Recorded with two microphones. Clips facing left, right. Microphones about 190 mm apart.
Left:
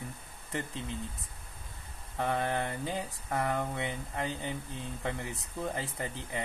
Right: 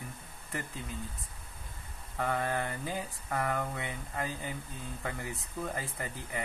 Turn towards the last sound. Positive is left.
turn(degrees=25)  # may be behind; listen again after turning